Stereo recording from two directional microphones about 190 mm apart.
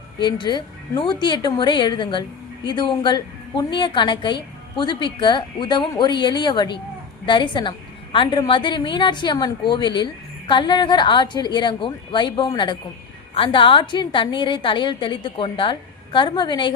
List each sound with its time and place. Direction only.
0.2 s a woman's voice: 25° left (ahead or behind)